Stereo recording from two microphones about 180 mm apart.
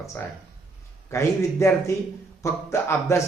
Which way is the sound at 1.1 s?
15° left (ahead or behind).